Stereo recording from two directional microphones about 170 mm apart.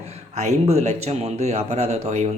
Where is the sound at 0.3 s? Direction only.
40° right (ahead or behind).